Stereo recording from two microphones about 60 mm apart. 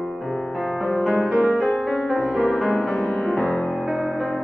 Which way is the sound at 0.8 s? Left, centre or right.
Centre.